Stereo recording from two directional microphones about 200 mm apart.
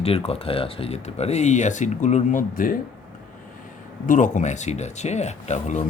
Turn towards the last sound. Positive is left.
turn(degrees=35)  # may be behind; listen again after turning